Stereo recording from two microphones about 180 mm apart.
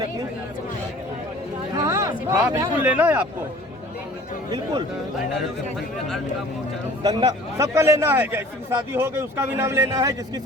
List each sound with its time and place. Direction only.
1.7 s a sound: 20° right (ahead or behind)
2.5 s speech: 15° right (ahead or behind)
7.0 s speech: 20° right (ahead or behind)